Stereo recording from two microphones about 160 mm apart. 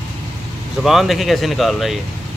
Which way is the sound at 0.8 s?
Centre (ahead or behind).